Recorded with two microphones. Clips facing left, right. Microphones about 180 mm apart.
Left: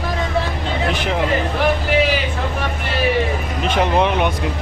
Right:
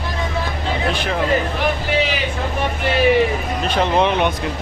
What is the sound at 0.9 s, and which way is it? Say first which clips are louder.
Speech: left 1 dB; 15° left (ahead or behind).